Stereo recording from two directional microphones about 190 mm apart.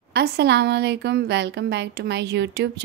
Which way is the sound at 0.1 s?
60° right (ahead or behind).